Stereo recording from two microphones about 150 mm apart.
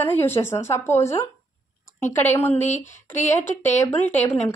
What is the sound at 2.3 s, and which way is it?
Speech, 15° left (ahead or behind).